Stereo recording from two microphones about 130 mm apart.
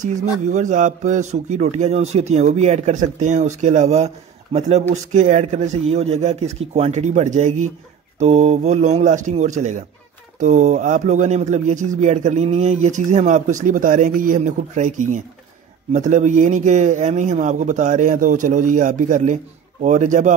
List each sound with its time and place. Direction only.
0.0 s a man's voice: 70° right (ahead or behind)